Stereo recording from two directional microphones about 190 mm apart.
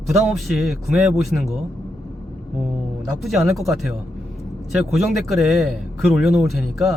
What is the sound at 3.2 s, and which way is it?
Speech, centre (ahead or behind).